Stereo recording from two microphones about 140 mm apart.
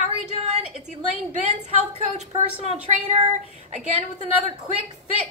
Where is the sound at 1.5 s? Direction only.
50° right (ahead or behind).